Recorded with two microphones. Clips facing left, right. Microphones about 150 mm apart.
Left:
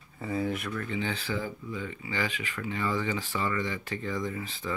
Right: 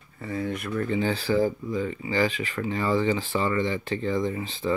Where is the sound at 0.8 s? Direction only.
35° right (ahead or behind).